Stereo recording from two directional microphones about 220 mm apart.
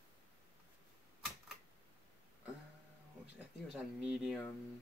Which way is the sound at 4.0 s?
Centre (ahead or behind).